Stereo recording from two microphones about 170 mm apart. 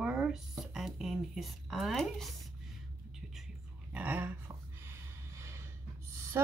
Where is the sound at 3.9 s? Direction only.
10° right (ahead or behind).